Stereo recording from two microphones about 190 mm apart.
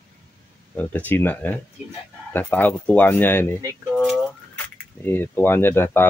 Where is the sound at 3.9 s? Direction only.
Centre (ahead or behind).